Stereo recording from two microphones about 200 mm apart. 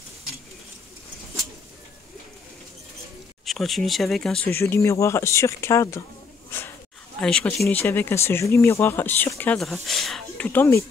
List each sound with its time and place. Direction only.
3.4 s speech: centre (ahead or behind)
7.2 s speech: 5° left (ahead or behind)